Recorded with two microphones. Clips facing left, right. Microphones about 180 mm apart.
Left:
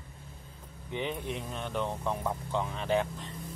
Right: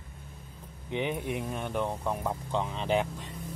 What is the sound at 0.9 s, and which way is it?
Speech, 15° right (ahead or behind).